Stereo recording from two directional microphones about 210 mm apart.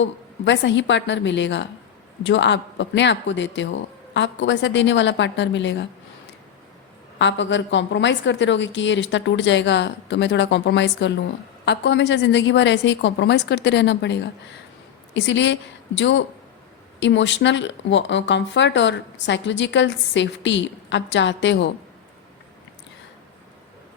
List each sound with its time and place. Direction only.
0.0 s speech: 60° left (ahead or behind)
7.2 s a woman's voice: 60° left (ahead or behind)